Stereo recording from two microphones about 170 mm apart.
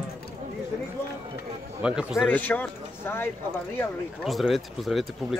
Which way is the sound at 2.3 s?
10° left (ahead or behind).